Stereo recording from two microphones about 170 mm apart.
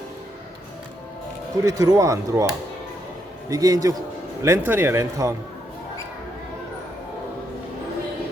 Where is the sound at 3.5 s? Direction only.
20° right (ahead or behind).